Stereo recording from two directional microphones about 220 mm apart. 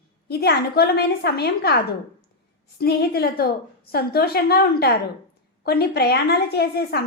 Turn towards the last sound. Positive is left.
turn(degrees=45)  # may be behind; listen again after turning